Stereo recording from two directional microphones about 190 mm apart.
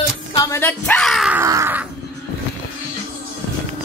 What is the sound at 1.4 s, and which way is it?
Crow, 15° right (ahead or behind).